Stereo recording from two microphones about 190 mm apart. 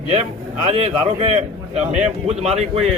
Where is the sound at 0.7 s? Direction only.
30° right (ahead or behind).